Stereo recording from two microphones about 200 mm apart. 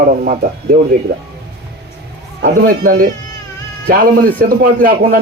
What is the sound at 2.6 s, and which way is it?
Speech, 45° right (ahead or behind).